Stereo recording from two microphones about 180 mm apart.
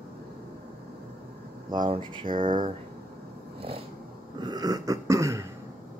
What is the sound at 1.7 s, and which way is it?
Speech, 25° right (ahead or behind).